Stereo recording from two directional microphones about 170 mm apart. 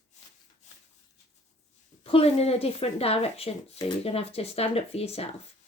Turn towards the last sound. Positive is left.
turn(degrees=35)  # may be behind; listen again after turning